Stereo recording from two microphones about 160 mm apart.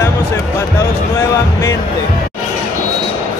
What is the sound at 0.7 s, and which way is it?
Music, 15° left (ahead or behind).